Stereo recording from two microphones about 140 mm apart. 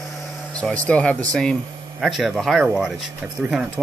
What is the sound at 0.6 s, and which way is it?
Speech, 5° left (ahead or behind).